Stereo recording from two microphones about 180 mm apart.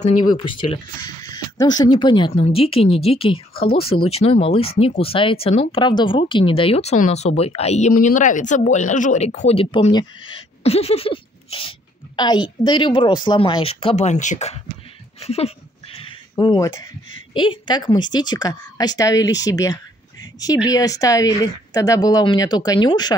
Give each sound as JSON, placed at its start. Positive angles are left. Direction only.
{"t": 0.3, "sound": "a woman's voice", "side_deg": 25}
{"t": 15.1, "sound": "a sound", "side_deg": 35}
{"t": 17.3, "sound": "a woman's voice", "side_deg": 25}